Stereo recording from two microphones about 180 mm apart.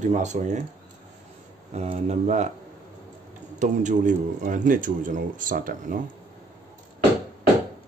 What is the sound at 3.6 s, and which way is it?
Speech, 45° right (ahead or behind).